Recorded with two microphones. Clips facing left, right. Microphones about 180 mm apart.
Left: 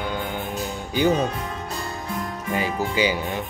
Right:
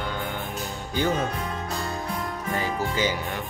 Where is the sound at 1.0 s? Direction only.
15° left (ahead or behind).